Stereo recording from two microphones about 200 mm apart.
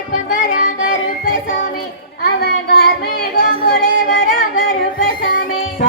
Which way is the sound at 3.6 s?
45° left (ahead or behind).